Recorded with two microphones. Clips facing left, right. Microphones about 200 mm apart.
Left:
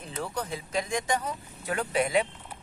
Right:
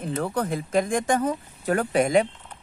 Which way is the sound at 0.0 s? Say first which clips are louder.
Right 8 dB; 55° right (ahead or behind).